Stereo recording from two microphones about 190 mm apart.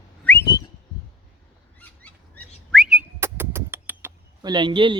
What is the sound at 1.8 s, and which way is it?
Bird, 10° left (ahead or behind).